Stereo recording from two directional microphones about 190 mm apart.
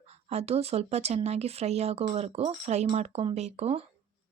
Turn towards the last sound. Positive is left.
turn(degrees=-35)  # may be behind; listen again after turning